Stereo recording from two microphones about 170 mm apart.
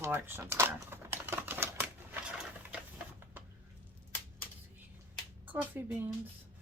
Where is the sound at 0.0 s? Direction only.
15° right (ahead or behind).